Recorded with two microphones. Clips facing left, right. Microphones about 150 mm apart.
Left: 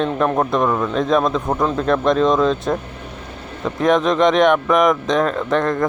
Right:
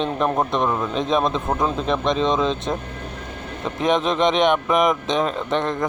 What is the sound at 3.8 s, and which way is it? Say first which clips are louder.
Speech: left 4 dB; 25° right (ahead or behind).